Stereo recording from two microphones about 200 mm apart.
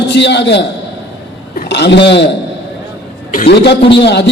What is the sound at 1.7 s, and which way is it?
Speech, 60° left (ahead or behind).